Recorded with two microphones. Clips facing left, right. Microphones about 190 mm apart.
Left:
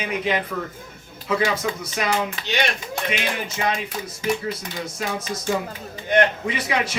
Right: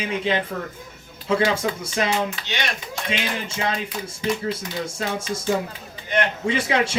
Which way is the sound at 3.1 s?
30° right (ahead or behind).